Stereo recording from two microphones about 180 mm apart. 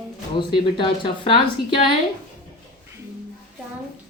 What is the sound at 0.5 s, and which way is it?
A woman's voice, 30° left (ahead or behind).